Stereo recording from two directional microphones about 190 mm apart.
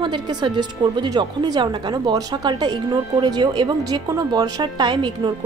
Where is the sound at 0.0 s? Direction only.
25° right (ahead or behind).